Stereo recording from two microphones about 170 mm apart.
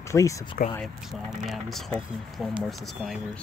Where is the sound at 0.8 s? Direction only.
Centre (ahead or behind).